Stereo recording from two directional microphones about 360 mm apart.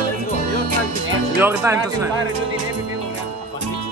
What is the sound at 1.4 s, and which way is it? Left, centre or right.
Speech, centre.